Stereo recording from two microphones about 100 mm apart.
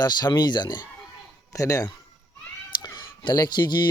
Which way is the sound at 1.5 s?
35° left (ahead or behind).